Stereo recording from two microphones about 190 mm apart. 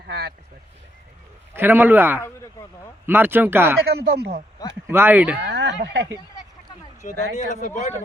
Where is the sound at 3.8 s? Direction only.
60° right (ahead or behind).